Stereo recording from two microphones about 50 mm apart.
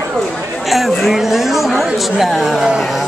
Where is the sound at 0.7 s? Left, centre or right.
Centre.